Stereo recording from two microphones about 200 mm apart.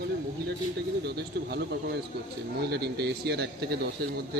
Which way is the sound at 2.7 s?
55° right (ahead or behind).